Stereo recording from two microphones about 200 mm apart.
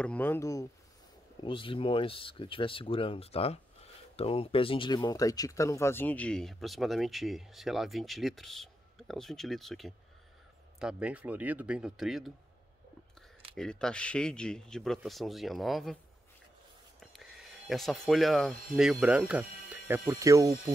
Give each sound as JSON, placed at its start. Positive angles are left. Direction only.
{"t": 0.0, "sound": "speech", "side_deg": 10}
{"t": 1.4, "sound": "speech", "side_deg": 25}
{"t": 13.6, "sound": "speech", "side_deg": 5}
{"t": 17.0, "sound": "speech", "side_deg": 0}